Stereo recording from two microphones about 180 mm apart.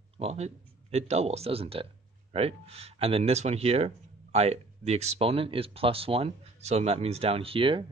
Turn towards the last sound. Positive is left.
turn(degrees=-30)  # may be behind; listen again after turning